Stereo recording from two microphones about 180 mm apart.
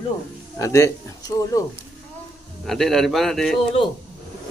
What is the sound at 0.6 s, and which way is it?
A man's voice, 15° left (ahead or behind).